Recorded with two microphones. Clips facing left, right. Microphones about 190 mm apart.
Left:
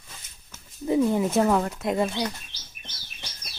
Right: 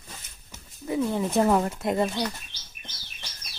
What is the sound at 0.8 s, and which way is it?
Wild animals, 25° left (ahead or behind).